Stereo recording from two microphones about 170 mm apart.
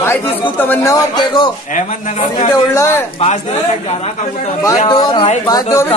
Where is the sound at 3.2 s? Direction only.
40° left (ahead or behind).